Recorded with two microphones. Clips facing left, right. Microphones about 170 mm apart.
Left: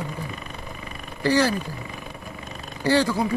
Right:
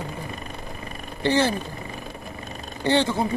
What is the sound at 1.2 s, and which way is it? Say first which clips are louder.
Speech: left 1 dB; 25° right (ahead or behind).